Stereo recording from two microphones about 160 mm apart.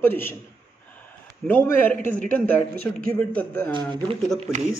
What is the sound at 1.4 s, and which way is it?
Speech, 10° left (ahead or behind).